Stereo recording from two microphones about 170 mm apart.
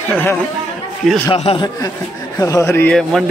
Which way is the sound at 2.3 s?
20° left (ahead or behind).